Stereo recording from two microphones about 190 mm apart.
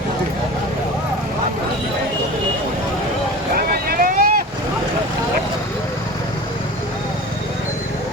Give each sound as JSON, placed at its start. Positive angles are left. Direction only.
{"t": 3.7, "sound": "boat", "side_deg": -50}